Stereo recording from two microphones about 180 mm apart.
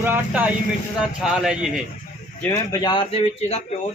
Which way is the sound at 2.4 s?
15° left (ahead or behind).